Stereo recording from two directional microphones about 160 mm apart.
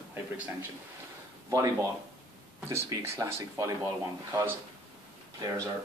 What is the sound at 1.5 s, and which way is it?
Speech, 20° right (ahead or behind).